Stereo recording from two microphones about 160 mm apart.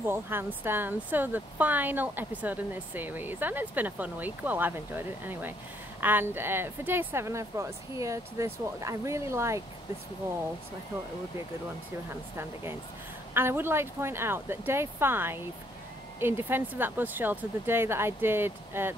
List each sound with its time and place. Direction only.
0.0 s speech: 15° right (ahead or behind)
13.3 s speech: 15° right (ahead or behind)